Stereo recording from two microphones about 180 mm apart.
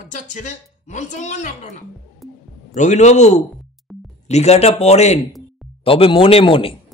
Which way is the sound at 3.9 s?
Centre (ahead or behind).